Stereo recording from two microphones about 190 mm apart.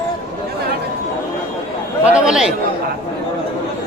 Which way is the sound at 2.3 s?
5° right (ahead or behind).